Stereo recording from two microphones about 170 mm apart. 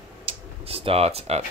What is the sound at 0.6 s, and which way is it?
Speech, 35° right (ahead or behind).